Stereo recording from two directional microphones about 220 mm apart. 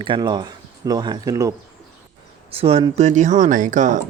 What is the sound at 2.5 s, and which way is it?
Speech, 25° right (ahead or behind).